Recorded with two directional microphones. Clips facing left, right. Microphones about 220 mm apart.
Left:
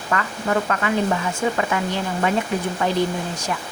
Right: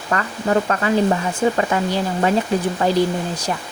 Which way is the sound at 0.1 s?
35° right (ahead or behind).